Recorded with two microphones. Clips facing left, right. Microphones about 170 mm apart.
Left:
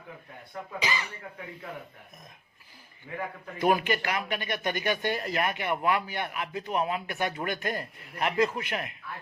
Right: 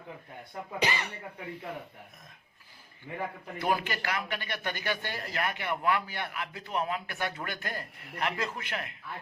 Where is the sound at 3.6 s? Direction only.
15° left (ahead or behind).